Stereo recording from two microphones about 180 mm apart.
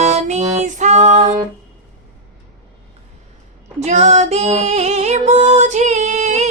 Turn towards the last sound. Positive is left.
turn(degrees=-40)  # may be behind; listen again after turning